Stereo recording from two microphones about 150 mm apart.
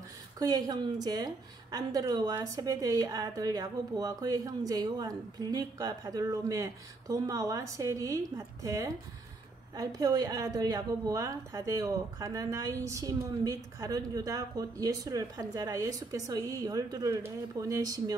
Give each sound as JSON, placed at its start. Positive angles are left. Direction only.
{"t": 0.4, "sound": "a woman's voice", "side_deg": -25}